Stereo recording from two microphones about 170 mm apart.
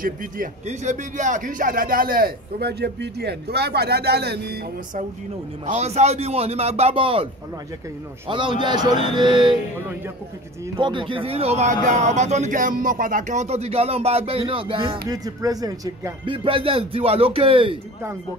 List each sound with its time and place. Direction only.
0.0 s speech: 55° right (ahead or behind)
5.7 s speech: 40° right (ahead or behind)
8.3 s speech: 30° right (ahead or behind)
10.8 s speech: 30° right (ahead or behind)
15.0 s speech: 20° right (ahead or behind)